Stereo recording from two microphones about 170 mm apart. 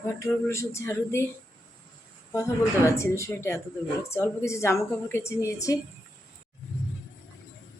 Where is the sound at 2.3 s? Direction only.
15° left (ahead or behind).